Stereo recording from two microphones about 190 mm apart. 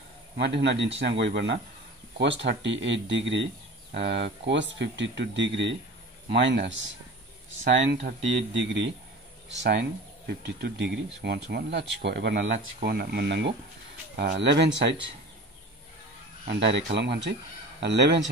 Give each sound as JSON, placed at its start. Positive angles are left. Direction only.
{"t": 0.4, "sound": "speech", "side_deg": -65}
{"t": 16.4, "sound": "speech", "side_deg": -65}